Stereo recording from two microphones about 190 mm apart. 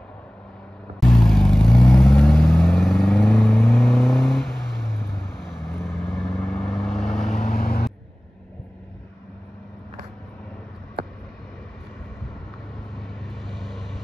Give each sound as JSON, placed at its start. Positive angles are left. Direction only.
{"t": 1.0, "sound": "vehicle", "side_deg": 0}
{"t": 7.4, "sound": "vehicle", "side_deg": 50}
{"t": 12.9, "sound": "vehicle", "side_deg": 0}